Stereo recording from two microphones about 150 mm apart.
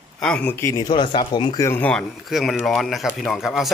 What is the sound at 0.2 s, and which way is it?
Speech, 10° left (ahead or behind).